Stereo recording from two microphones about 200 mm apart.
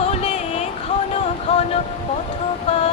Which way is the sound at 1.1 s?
30° left (ahead or behind).